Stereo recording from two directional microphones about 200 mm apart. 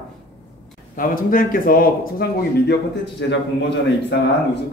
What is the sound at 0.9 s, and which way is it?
Speech, 45° left (ahead or behind).